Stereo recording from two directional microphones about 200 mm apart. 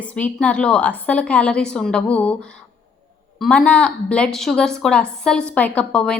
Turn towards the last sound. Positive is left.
turn(degrees=5)  # may be behind; listen again after turning